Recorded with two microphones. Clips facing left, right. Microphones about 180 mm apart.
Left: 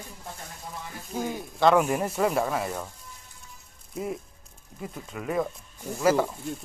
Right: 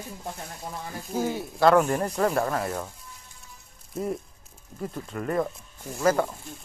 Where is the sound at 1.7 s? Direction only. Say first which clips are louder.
Right 1 dB; 10° left (ahead or behind).